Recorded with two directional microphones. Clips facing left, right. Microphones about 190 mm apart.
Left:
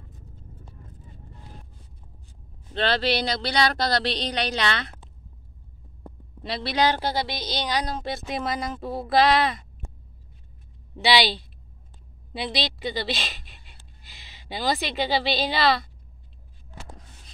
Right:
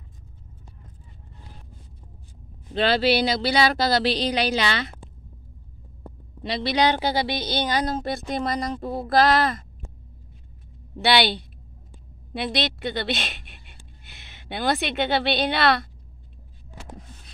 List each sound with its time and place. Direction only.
2.7 s speech: 5° right (ahead or behind)
6.4 s speech: centre (ahead or behind)
7.4 s a woman's voice: 55° right (ahead or behind)
7.7 s speech: centre (ahead or behind)
11.0 s speech: centre (ahead or behind)
12.4 s speech: centre (ahead or behind)
14.0 s a sound: 55° right (ahead or behind)
14.5 s speech: centre (ahead or behind)